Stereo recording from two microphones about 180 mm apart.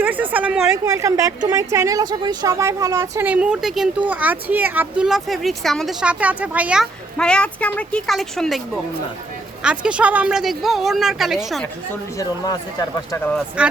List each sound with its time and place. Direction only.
0.0 s a sound: 10° right (ahead or behind)
0.9 s a woman's voice: 20° right (ahead or behind)
3.2 s speech: 5° right (ahead or behind)
7.2 s speech: 5° left (ahead or behind)
13.6 s speech: 5° right (ahead or behind)